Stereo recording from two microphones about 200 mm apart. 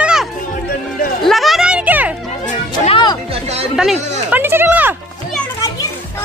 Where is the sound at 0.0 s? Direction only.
5° right (ahead or behind).